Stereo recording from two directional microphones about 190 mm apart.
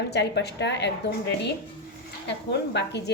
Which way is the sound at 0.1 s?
60° left (ahead or behind).